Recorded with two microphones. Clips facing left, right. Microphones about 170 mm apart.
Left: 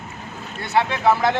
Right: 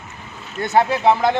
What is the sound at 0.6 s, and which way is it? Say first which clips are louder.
Speech: right 4 dB; 45° right (ahead or behind).